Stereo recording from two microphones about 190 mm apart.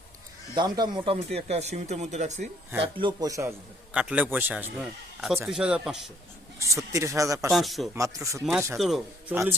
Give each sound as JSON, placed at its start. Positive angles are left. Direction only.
{"t": 0.5, "sound": "speech", "side_deg": -20}
{"t": 3.9, "sound": "a man's voice", "side_deg": -5}
{"t": 6.6, "sound": "a man's voice", "side_deg": -15}
{"t": 7.5, "sound": "speech", "side_deg": 0}
{"t": 7.9, "sound": "a man's voice", "side_deg": -15}